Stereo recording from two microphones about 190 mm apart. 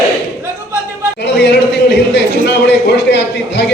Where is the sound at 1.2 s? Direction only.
65° left (ahead or behind).